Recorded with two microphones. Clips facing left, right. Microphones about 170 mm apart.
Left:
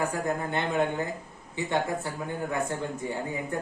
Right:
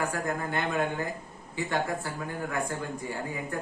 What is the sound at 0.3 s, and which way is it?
Speech, 20° left (ahead or behind).